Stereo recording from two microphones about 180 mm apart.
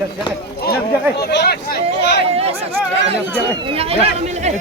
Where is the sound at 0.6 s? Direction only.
65° left (ahead or behind).